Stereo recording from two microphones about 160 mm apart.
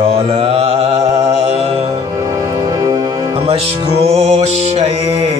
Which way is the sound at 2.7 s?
25° right (ahead or behind).